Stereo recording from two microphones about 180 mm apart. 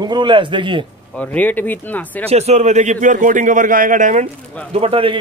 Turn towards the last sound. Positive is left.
turn(degrees=-30)  # may be behind; listen again after turning